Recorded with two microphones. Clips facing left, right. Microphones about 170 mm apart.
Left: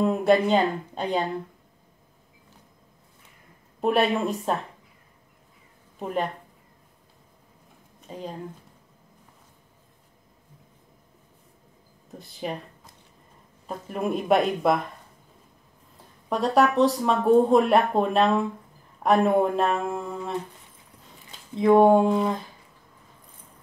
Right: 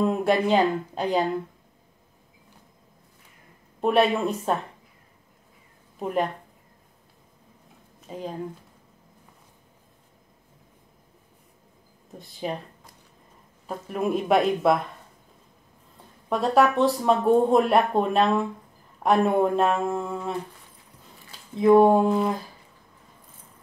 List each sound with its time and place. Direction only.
0.0 s speech: centre (ahead or behind)
3.8 s speech: centre (ahead or behind)
5.9 s a woman's voice: 5° right (ahead or behind)
8.1 s speech: centre (ahead or behind)
12.2 s speech: centre (ahead or behind)
13.7 s speech: centre (ahead or behind)
16.3 s speech: centre (ahead or behind)
21.5 s speech: centre (ahead or behind)